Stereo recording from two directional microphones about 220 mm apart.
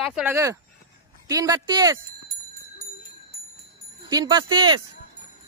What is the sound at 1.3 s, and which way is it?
Speech, 15° right (ahead or behind).